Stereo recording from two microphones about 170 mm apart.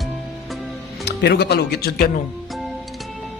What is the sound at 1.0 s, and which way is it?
Speech, 70° left (ahead or behind).